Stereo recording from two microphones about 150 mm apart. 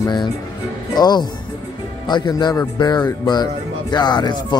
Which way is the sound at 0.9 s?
30° left (ahead or behind).